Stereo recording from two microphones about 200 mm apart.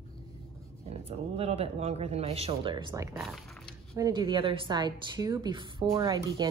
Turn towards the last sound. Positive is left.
turn(degrees=-20)  # may be behind; listen again after turning